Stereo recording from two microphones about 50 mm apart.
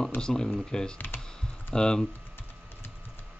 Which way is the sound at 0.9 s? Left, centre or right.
Left.